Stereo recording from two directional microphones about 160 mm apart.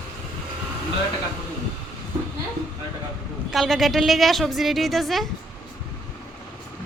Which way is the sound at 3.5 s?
Centre (ahead or behind).